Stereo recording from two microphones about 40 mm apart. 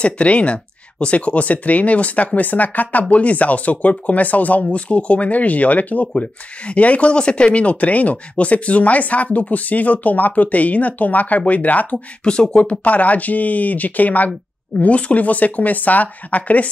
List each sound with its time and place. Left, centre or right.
0.0 s speech: left
12.3 s speech: left
12.8 s speech: left